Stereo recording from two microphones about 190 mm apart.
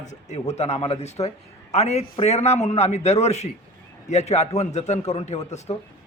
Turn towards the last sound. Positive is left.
turn(degrees=35)  # may be behind; listen again after turning